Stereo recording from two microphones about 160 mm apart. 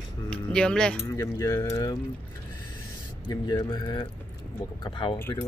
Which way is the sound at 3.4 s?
25° left (ahead or behind).